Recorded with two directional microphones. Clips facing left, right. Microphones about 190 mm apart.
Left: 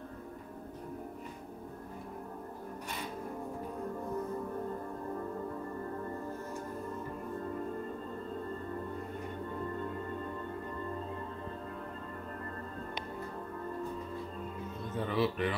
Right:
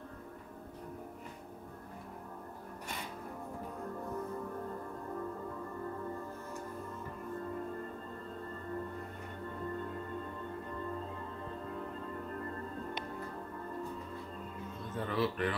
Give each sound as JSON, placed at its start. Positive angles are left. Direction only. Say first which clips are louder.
{"t": 15.0, "sound": "speech", "louder": "left 2 dB", "side_deg": 15}